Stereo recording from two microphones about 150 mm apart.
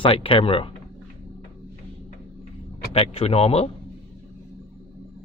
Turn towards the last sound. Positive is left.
turn(degrees=45)  # may be behind; listen again after turning